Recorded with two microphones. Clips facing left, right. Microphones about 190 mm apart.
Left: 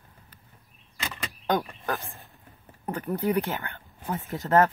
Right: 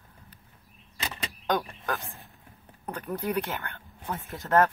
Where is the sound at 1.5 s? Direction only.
15° left (ahead or behind).